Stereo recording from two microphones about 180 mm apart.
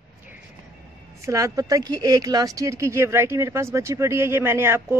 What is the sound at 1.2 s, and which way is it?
Speech, 20° right (ahead or behind).